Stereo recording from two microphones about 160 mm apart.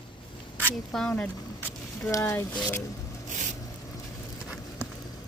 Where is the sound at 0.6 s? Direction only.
5° left (ahead or behind).